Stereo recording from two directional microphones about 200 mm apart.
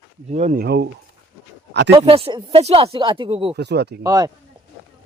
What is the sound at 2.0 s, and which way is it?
Speech, 30° right (ahead or behind).